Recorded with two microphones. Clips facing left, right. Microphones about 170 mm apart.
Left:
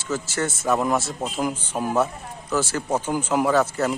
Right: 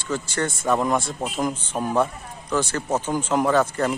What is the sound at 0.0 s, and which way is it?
A man's voice, 5° left (ahead or behind).